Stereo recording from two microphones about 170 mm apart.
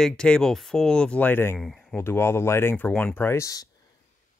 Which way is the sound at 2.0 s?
15° left (ahead or behind).